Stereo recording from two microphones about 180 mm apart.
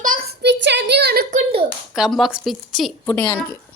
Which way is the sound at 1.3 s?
30° right (ahead or behind).